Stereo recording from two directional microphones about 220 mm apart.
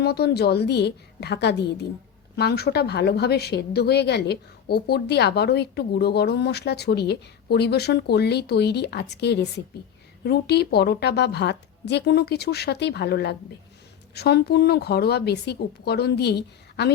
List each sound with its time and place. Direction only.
0.0 s speech: 45° left (ahead or behind)